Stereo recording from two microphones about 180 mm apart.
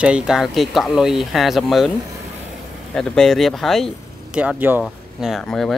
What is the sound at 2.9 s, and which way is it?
Speech, 5° left (ahead or behind).